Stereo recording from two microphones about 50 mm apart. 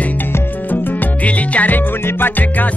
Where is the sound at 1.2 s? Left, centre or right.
Left.